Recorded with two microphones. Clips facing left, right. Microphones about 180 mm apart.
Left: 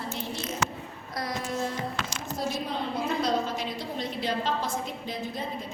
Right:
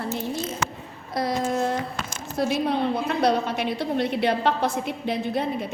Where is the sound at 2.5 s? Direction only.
65° right (ahead or behind).